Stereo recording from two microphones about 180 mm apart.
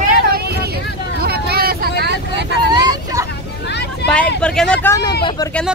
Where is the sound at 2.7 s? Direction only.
20° right (ahead or behind).